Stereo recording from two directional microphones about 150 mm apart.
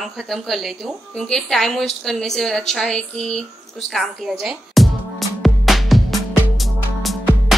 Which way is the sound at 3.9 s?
Centre (ahead or behind).